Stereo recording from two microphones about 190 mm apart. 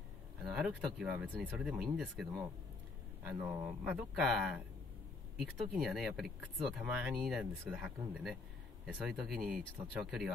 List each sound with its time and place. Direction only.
0.4 s speech: centre (ahead or behind)